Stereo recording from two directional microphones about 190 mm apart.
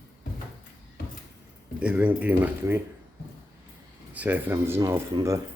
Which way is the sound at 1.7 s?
5° right (ahead or behind).